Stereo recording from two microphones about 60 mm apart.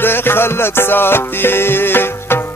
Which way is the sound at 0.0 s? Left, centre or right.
Left.